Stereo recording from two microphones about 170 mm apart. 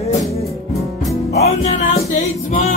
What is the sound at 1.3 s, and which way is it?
Music, 40° left (ahead or behind).